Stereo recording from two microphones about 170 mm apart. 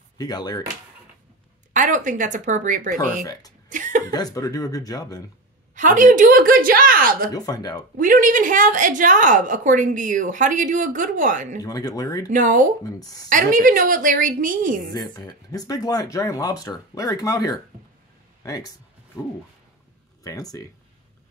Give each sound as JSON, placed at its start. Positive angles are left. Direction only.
{"t": 0.2, "sound": "speech", "side_deg": 25}
{"t": 1.7, "sound": "a woman's voice", "side_deg": -45}
{"t": 3.6, "sound": "chuckle", "side_deg": -50}
{"t": 4.1, "sound": "speech", "side_deg": 20}
{"t": 5.8, "sound": "a woman's voice", "side_deg": -50}
{"t": 7.3, "sound": "speech", "side_deg": 20}
{"t": 8.0, "sound": "a woman's voice", "side_deg": -50}
{"t": 11.6, "sound": "speech", "side_deg": 20}
{"t": 12.3, "sound": "a woman's voice", "side_deg": -50}
{"t": 12.8, "sound": "speech", "side_deg": 20}
{"t": 13.3, "sound": "a woman's voice", "side_deg": -50}
{"t": 15.0, "sound": "speech", "side_deg": 20}
{"t": 20.2, "sound": "speech", "side_deg": 20}